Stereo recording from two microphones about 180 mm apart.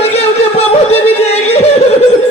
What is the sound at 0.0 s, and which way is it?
Music, 35° left (ahead or behind).